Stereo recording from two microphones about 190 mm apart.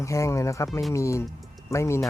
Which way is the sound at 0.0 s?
15° left (ahead or behind).